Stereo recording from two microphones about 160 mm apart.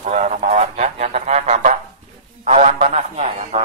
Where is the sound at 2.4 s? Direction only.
45° right (ahead or behind).